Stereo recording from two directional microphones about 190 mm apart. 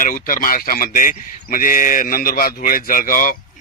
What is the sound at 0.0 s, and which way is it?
Speech, 45° left (ahead or behind).